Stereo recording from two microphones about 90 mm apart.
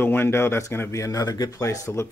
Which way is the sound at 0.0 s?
25° left (ahead or behind).